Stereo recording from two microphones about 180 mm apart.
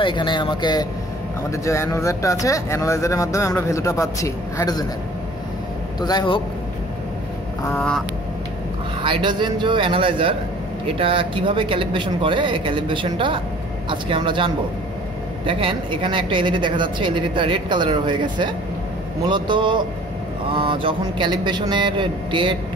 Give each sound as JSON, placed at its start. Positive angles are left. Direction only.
{"t": 0.0, "sound": "speech", "side_deg": 25}
{"t": 5.9, "sound": "speech", "side_deg": 20}
{"t": 7.7, "sound": "goose", "side_deg": 0}
{"t": 9.0, "sound": "speech", "side_deg": -25}